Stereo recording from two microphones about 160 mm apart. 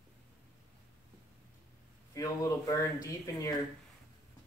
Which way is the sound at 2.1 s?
20° left (ahead or behind).